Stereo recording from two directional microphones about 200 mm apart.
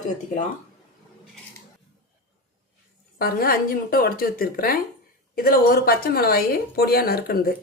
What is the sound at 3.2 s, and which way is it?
A woman's voice, 45° left (ahead or behind).